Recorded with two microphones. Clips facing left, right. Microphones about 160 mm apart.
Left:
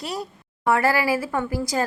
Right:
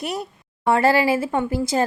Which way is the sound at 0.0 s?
20° right (ahead or behind).